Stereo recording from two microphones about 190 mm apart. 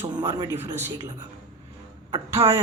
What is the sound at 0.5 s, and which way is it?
Speech, 35° right (ahead or behind).